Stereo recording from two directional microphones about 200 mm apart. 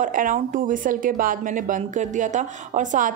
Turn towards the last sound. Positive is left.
turn(degrees=-40)  # may be behind; listen again after turning